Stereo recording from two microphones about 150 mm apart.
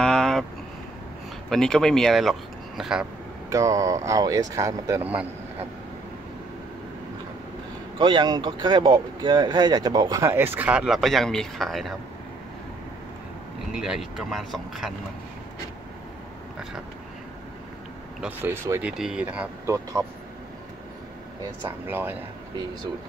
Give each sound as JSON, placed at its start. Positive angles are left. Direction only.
{"t": 0.0, "sound": "a sound", "side_deg": 5}
{"t": 1.5, "sound": "speech", "side_deg": 5}
{"t": 3.4, "sound": "speech", "side_deg": -20}
{"t": 8.0, "sound": "speech", "side_deg": -30}
{"t": 10.2, "sound": "speech", "side_deg": -15}
{"t": 13.7, "sound": "speech", "side_deg": -5}
{"t": 18.2, "sound": "speech", "side_deg": -15}
{"t": 19.7, "sound": "speech", "side_deg": -20}
{"t": 21.6, "sound": "speech", "side_deg": -15}